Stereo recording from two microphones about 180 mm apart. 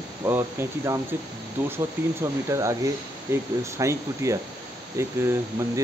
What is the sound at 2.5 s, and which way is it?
Speech, 15° right (ahead or behind).